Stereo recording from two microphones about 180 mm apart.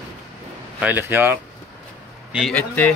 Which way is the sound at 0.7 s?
10° right (ahead or behind).